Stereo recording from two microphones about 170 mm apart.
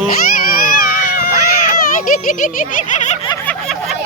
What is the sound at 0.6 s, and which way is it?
Baby cry, 60° left (ahead or behind).